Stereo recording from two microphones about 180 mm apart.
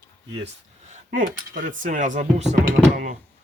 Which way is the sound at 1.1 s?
50° right (ahead or behind).